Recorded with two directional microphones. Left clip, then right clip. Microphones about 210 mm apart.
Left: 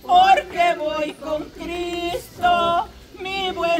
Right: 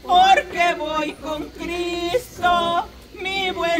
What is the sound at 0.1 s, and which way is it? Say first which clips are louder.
Female singing: even; 5° left (ahead or behind).